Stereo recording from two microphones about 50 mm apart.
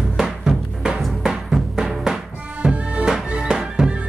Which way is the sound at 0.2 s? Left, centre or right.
Centre.